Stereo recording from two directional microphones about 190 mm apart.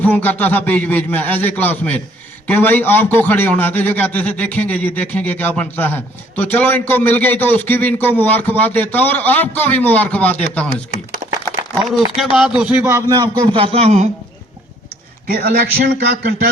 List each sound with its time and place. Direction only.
0.0 s a man's voice: 10° left (ahead or behind)
12.1 s a man's voice: centre (ahead or behind); by 14.1 s 35° right (ahead or behind)
15.3 s a man's voice: 55° right (ahead or behind)